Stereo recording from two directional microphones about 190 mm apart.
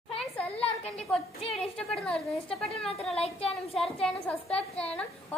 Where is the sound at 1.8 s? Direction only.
5° left (ahead or behind).